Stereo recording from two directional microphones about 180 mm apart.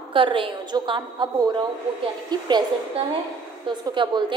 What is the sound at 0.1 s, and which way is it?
A woman's voice, 30° right (ahead or behind).